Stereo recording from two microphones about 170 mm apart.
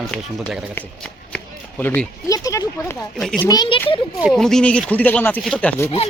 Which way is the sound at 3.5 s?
25° left (ahead or behind).